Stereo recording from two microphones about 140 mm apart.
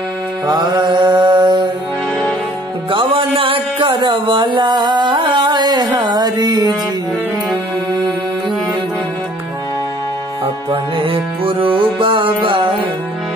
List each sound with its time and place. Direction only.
0.5 s mantra: 30° right (ahead or behind)
2.9 s a sound: 35° right (ahead or behind)
10.4 s music: 40° right (ahead or behind)